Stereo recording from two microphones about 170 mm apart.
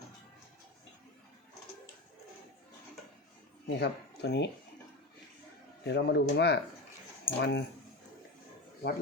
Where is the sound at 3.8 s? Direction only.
75° left (ahead or behind).